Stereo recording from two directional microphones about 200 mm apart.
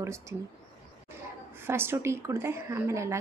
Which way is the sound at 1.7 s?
10° right (ahead or behind).